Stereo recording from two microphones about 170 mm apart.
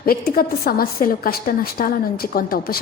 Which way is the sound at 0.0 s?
60° left (ahead or behind).